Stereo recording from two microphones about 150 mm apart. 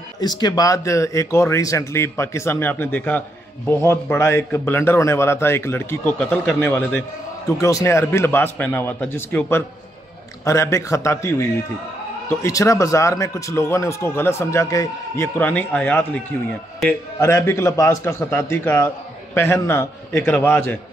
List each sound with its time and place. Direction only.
0.2 s speech: 30° left (ahead or behind); by 16.2 s 10° left (ahead or behind)
17.2 s speech: 20° left (ahead or behind)